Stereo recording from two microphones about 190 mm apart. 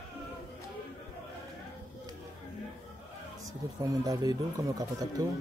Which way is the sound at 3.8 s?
20° right (ahead or behind).